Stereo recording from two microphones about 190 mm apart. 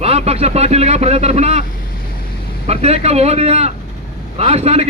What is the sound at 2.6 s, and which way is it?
A man's voice, 35° right (ahead or behind).